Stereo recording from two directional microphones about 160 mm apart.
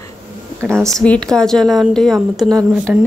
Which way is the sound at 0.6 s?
Centre (ahead or behind).